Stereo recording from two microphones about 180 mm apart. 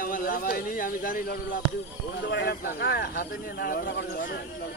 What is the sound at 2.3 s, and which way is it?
Speech, 65° left (ahead or behind).